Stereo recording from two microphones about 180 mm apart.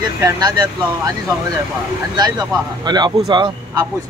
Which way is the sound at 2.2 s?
20° right (ahead or behind).